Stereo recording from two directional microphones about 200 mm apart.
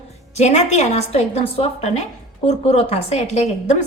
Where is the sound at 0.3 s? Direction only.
35° left (ahead or behind).